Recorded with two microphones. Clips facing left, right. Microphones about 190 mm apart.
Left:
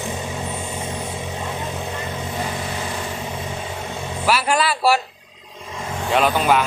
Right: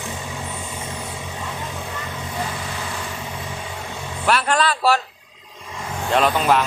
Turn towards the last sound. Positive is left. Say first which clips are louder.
# even
turn(degrees=0)  # may be behind; listen again after turning